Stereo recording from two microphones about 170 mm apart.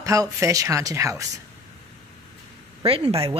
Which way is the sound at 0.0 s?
20° right (ahead or behind).